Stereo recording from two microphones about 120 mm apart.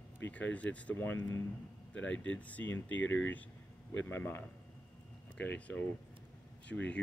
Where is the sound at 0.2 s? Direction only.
10° left (ahead or behind).